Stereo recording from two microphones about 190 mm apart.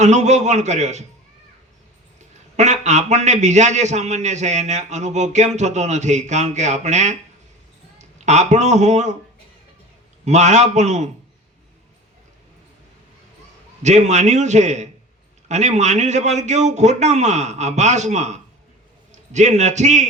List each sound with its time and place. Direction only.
0.0 s a man's voice: 40° right (ahead or behind)
2.6 s a man's voice: 35° right (ahead or behind)
10.2 s a man's voice: 40° right (ahead or behind)
13.8 s a man's voice: 40° right (ahead or behind)